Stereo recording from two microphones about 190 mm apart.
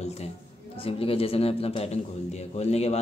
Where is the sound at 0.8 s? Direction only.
30° left (ahead or behind).